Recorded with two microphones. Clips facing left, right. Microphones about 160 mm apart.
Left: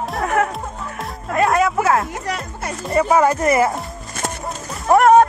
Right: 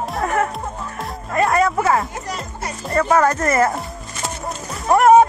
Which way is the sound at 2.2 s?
65° left (ahead or behind).